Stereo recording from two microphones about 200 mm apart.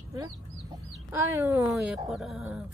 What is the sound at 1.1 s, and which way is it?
Speech, 10° right (ahead or behind).